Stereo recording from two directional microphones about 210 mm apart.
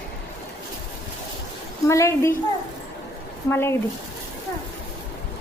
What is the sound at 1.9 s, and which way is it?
Speech, 15° left (ahead or behind).